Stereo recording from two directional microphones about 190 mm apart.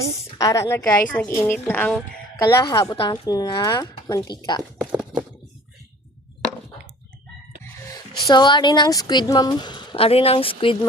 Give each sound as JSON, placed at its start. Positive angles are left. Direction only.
{"t": 0.3, "sound": "a woman's voice", "side_deg": 15}
{"t": 2.4, "sound": "a woman's voice", "side_deg": 15}
{"t": 4.8, "sound": "a sound", "side_deg": -5}
{"t": 7.6, "sound": "speech", "side_deg": 20}